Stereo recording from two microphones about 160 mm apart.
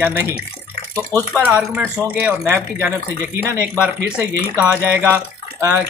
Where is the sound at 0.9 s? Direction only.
20° right (ahead or behind).